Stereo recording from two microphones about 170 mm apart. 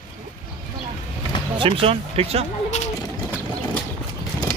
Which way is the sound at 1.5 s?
30° right (ahead or behind).